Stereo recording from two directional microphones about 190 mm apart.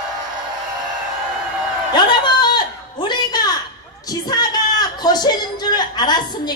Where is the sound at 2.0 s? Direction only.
25° left (ahead or behind).